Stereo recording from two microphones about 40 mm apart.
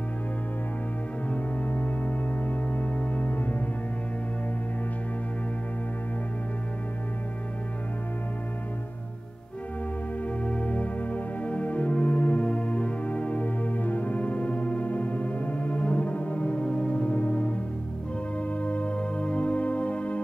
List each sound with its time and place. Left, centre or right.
1.3 s music: left
10.2 s music: left